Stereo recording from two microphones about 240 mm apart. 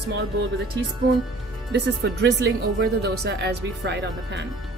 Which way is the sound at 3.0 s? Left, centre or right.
Right.